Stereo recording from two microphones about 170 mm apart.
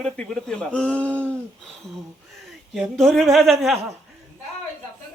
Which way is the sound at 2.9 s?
Centre (ahead or behind).